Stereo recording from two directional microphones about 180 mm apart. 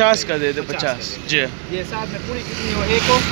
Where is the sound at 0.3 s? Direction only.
5° left (ahead or behind).